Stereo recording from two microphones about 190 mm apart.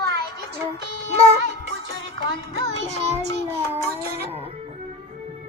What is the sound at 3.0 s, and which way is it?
Speech, 35° right (ahead or behind).